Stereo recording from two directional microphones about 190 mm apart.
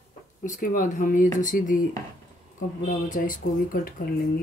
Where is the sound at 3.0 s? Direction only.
45° left (ahead or behind).